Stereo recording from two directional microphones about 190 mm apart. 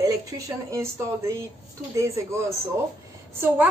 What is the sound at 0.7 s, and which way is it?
Speech, 15° right (ahead or behind).